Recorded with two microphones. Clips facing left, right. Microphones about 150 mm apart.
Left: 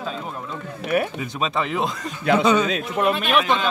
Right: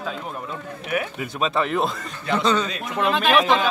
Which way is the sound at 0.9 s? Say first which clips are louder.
Left 4 dB; 40° left (ahead or behind).